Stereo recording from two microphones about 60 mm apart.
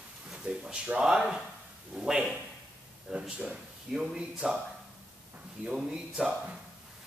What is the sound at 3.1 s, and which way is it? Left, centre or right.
Speech, centre.